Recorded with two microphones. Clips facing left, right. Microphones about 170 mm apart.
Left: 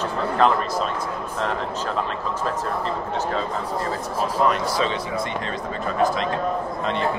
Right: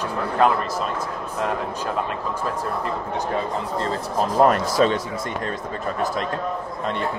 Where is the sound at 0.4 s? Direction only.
10° right (ahead or behind).